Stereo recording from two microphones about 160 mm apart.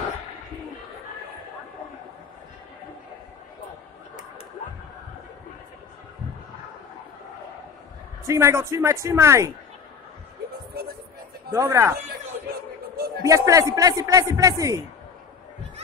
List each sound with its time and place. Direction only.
8.3 s speech: 15° right (ahead or behind)
11.5 s a man's voice: 20° right (ahead or behind)
12.9 s a sound: 70° right (ahead or behind)
13.2 s a man's voice: 20° right (ahead or behind)